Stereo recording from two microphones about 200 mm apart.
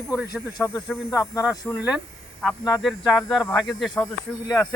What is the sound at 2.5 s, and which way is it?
Speech, 15° left (ahead or behind).